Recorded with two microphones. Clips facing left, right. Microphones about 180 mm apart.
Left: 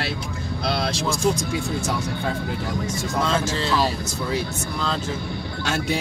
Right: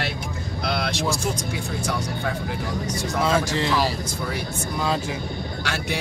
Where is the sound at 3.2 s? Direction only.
15° right (ahead or behind).